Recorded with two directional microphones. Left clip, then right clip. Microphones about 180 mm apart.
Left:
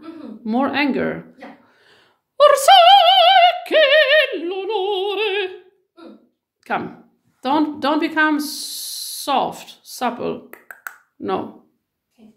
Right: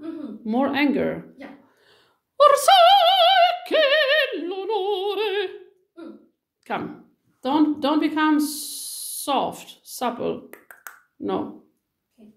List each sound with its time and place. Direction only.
0.4 s speech: 20° left (ahead or behind)
1.7 s opera: 15° left (ahead or behind)
6.6 s speech: 20° left (ahead or behind)